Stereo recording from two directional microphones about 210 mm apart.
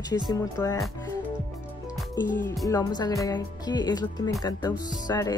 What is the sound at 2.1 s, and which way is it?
Speech, 10° left (ahead or behind).